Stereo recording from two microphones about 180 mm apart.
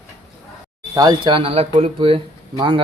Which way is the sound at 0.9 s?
25° right (ahead or behind).